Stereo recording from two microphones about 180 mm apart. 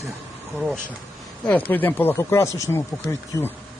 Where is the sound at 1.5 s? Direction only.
10° left (ahead or behind).